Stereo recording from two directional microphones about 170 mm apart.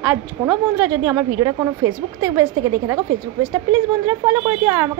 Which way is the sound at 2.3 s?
15° right (ahead or behind).